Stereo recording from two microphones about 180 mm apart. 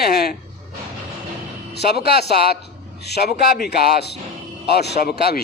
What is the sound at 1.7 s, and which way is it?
A man's voice, 65° left (ahead or behind).